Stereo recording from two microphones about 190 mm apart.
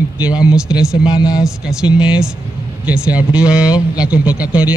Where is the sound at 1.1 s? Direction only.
20° left (ahead or behind).